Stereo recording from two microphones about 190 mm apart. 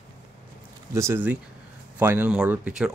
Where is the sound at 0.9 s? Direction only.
10° right (ahead or behind).